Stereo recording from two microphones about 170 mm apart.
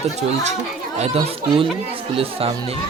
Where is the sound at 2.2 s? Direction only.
35° right (ahead or behind).